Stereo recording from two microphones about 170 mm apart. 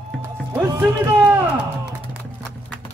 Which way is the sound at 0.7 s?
10° right (ahead or behind).